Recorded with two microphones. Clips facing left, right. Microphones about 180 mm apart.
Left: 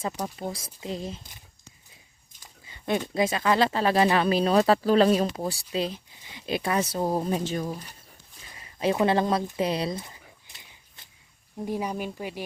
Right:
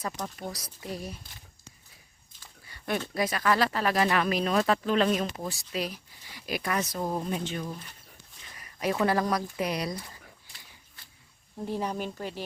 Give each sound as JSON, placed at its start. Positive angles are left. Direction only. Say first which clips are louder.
{"t": 0.3, "sound": "speech", "louder": "left 4 dB", "side_deg": 25}
{"t": 2.4, "sound": "speech", "louder": "left 3 dB", "side_deg": 20}
{"t": 8.5, "sound": "a sound", "louder": "left 4 dB", "side_deg": 25}
{"t": 11.6, "sound": "speech", "louder": "left 2 dB", "side_deg": 10}